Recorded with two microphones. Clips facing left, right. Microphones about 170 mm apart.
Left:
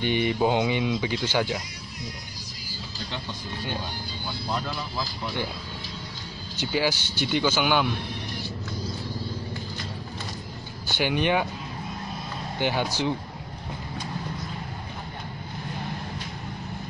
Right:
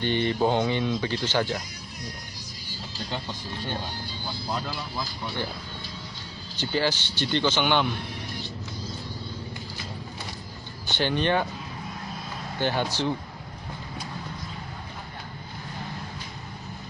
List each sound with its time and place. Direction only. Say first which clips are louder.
0.0 s speech: even; 15° left (ahead or behind)
6.6 s speech: even; 10° left (ahead or behind)
10.9 s speech: even; 10° left (ahead or behind)
12.5 s speech: even; 15° left (ahead or behind)